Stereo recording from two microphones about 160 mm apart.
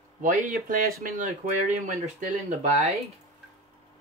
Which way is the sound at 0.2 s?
50° right (ahead or behind).